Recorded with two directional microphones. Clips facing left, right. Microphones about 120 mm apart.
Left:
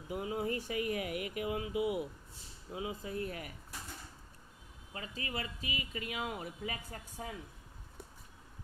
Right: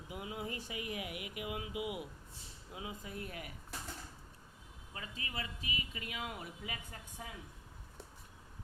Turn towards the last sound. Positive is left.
turn(degrees=40)  # may be behind; listen again after turning